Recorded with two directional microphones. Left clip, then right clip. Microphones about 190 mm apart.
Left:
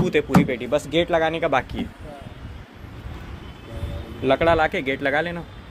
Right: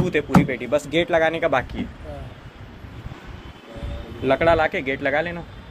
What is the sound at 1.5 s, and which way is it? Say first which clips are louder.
Speech: even; 15° left (ahead or behind).